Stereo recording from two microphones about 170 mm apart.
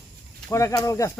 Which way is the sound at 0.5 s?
20° left (ahead or behind).